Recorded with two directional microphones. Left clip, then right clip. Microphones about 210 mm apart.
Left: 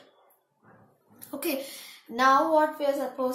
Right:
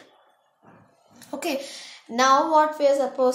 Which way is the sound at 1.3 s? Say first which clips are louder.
Right 4 dB; 45° right (ahead or behind).